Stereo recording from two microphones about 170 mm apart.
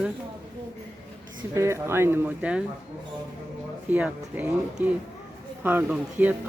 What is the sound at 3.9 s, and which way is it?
A man's voice, 10° right (ahead or behind).